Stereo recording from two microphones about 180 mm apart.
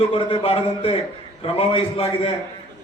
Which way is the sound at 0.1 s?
30° left (ahead or behind).